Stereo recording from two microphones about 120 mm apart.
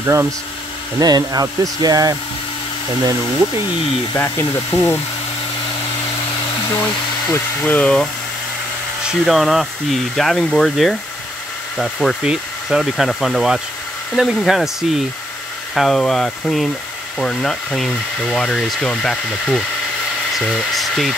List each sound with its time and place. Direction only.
0.0 s speech: 20° right (ahead or behind)
0.9 s speech: 30° right (ahead or behind)
4.1 s speech: 20° left (ahead or behind)
6.8 s speech: 15° left (ahead or behind)
9.0 s speech: centre (ahead or behind)